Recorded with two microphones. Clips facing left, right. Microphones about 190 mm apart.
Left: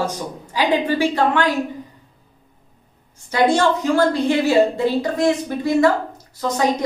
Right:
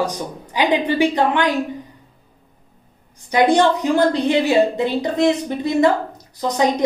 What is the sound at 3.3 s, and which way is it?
A woman's voice, 15° right (ahead or behind).